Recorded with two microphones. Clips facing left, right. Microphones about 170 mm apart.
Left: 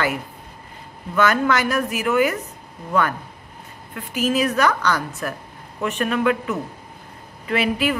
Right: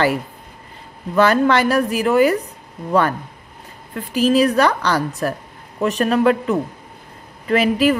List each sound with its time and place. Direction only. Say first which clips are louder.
1.1 s a woman's voice: right 4 dB; 30° right (ahead or behind)